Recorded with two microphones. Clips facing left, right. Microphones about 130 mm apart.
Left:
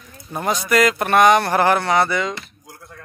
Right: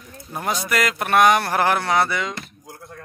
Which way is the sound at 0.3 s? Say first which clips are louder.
Left 4 dB; centre (ahead or behind).